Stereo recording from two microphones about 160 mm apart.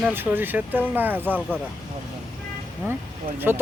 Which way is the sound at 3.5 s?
10° right (ahead or behind).